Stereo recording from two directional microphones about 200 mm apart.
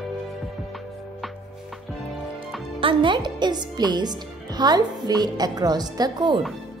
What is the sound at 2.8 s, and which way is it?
A woman's voice, 25° right (ahead or behind).